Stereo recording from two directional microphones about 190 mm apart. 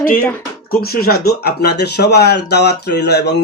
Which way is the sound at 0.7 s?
50° left (ahead or behind).